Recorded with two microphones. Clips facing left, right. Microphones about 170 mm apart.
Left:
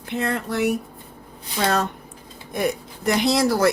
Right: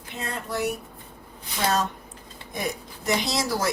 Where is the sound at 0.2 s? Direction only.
65° left (ahead or behind).